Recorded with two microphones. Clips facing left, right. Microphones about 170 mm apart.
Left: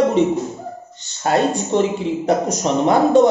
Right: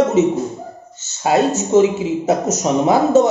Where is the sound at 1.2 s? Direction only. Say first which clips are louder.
Right 2 dB; 5° right (ahead or behind).